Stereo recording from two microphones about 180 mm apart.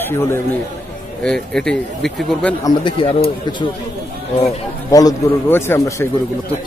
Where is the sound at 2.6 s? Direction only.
30° left (ahead or behind).